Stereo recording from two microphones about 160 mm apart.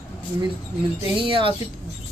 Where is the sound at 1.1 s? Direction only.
35° right (ahead or behind).